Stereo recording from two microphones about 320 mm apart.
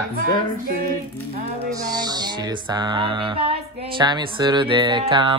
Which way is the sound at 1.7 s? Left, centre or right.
Centre.